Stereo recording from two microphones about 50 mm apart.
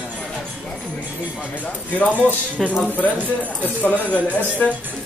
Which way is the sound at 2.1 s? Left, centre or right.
Right.